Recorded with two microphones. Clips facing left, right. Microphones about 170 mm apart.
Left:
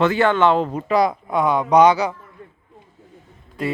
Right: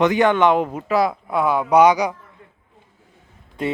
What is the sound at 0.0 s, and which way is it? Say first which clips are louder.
A man's voice: right 1 dB; 15° right (ahead or behind).